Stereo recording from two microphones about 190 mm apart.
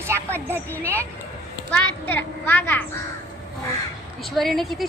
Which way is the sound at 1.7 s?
10° left (ahead or behind).